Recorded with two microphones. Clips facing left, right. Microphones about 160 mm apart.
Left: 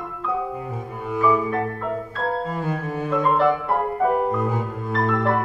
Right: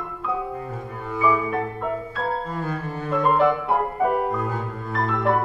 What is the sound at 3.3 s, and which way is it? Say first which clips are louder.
Music: right 1 dB; centre (ahead or behind).